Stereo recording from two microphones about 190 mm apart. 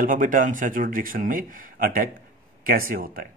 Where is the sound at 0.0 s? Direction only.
45° right (ahead or behind).